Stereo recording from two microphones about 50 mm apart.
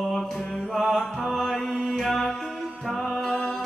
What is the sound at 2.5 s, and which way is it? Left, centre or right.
Music, centre.